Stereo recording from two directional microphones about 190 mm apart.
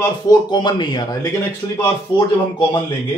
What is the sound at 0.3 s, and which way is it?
Speech, 20° left (ahead or behind).